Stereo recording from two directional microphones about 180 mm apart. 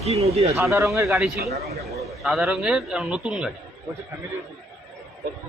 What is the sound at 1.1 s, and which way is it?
A man's voice, centre (ahead or behind).